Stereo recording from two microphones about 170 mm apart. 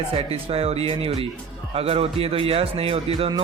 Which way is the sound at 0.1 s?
35° right (ahead or behind).